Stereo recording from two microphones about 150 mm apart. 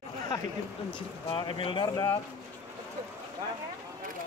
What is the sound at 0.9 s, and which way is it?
Speech, 35° left (ahead or behind).